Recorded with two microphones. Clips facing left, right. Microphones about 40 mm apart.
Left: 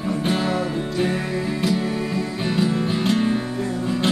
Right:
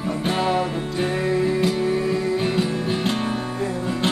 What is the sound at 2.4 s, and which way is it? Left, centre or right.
Music, centre.